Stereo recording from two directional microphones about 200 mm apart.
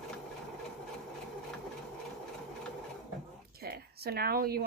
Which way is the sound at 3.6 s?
50° right (ahead or behind).